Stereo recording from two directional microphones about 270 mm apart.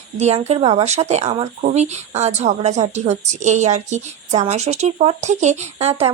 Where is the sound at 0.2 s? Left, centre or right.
Right.